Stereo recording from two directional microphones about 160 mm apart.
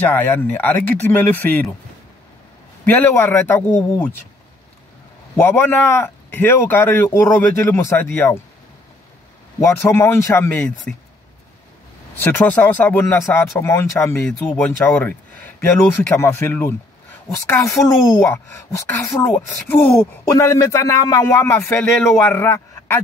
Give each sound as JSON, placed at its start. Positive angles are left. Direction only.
{"t": 0.0, "sound": "speech", "side_deg": 10}
{"t": 2.8, "sound": "speech", "side_deg": 10}
{"t": 5.3, "sound": "speech", "side_deg": 15}
{"t": 9.6, "sound": "speech", "side_deg": 15}
{"t": 12.3, "sound": "speech", "side_deg": 10}